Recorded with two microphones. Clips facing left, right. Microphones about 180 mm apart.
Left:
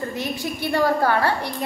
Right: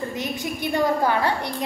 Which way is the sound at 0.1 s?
15° right (ahead or behind).